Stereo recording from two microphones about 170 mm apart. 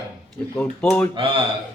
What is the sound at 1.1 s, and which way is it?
Speech, 30° right (ahead or behind).